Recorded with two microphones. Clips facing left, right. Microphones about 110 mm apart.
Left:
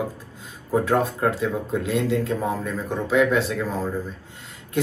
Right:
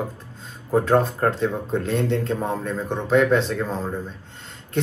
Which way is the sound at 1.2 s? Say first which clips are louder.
Right 1 dB; 5° left (ahead or behind).